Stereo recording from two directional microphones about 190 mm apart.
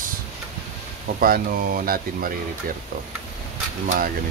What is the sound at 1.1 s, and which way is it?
Speech, 50° right (ahead or behind).